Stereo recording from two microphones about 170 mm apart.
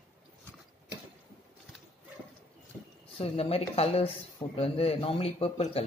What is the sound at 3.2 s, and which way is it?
A woman's voice, 35° left (ahead or behind).